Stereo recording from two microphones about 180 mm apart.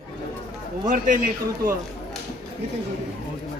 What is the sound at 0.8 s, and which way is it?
Speech, 45° right (ahead or behind).